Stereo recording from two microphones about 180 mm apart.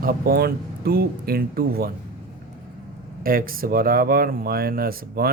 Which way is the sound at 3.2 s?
55° right (ahead or behind).